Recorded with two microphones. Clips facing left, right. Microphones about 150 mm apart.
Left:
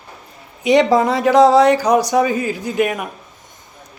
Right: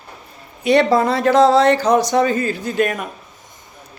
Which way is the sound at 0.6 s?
15° left (ahead or behind).